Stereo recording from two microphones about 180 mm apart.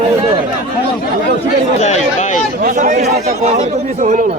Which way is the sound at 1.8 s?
40° left (ahead or behind).